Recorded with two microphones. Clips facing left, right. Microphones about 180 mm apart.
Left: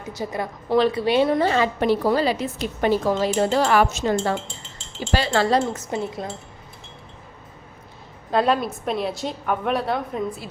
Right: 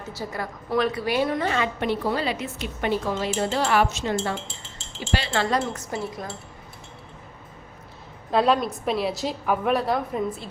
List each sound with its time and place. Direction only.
0.0 s a woman's voice: 20° left (ahead or behind)
8.3 s a woman's voice: centre (ahead or behind)